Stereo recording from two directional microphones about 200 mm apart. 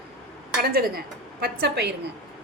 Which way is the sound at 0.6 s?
50° right (ahead or behind).